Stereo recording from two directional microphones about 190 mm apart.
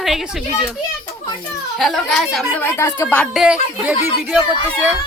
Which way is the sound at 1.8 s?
Centre (ahead or behind).